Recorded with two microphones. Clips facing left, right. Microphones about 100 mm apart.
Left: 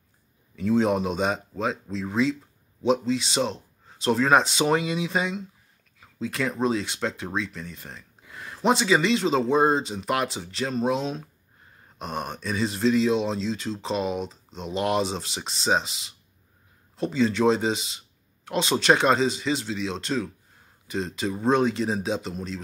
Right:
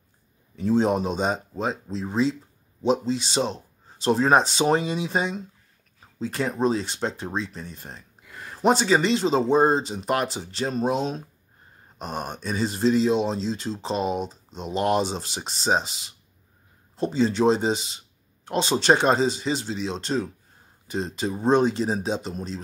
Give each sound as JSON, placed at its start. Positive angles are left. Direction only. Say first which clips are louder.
{"t": 0.6, "sound": "speech", "louder": "right 1 dB", "side_deg": -35}
{"t": 14.1, "sound": "speech", "louder": "right 2 dB", "side_deg": 0}
{"t": 14.7, "sound": "speech", "louder": "right 2 dB", "side_deg": -40}
{"t": 17.0, "sound": "speech", "louder": "right 1 dB", "side_deg": -35}